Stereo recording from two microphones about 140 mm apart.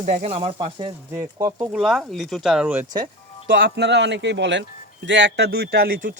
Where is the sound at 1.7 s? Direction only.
5° right (ahead or behind).